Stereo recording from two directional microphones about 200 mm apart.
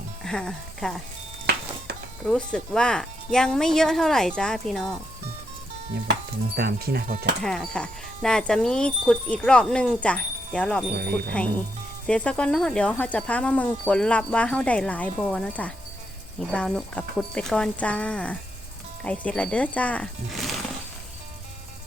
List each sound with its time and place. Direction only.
0.2 s speech: centre (ahead or behind)
2.2 s speech: 5° left (ahead or behind)
6.6 s speech: 50° right (ahead or behind)
7.4 s speech: centre (ahead or behind)
10.9 s speech: 50° right (ahead or behind)
12.0 s speech: 5° left (ahead or behind)